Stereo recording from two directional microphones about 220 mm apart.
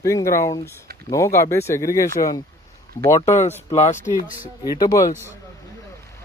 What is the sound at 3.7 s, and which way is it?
Speech, 30° left (ahead or behind).